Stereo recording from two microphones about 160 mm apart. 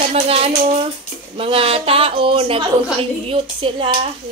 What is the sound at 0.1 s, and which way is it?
Speech, 40° right (ahead or behind).